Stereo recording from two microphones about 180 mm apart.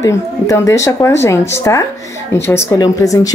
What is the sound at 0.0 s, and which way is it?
Speech, 15° left (ahead or behind).